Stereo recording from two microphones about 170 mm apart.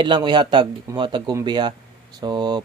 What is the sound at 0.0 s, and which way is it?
Speech, 25° right (ahead or behind).